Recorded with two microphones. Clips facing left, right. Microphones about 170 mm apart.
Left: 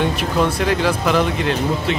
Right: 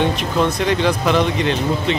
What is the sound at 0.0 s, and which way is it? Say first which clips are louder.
Speech: right 1 dB; 5° left (ahead or behind).